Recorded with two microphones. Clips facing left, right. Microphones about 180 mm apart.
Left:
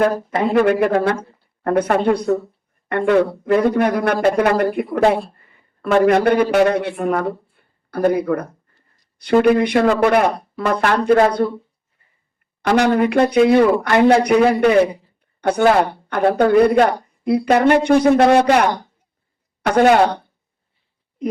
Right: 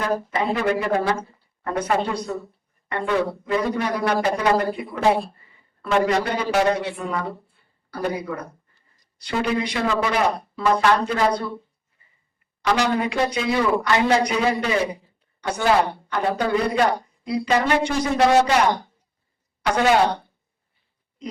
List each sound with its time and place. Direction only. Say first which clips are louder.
0.0 s a man's voice: left 6 dB; 55° left (ahead or behind)
12.6 s a man's voice: left 6 dB; 55° left (ahead or behind)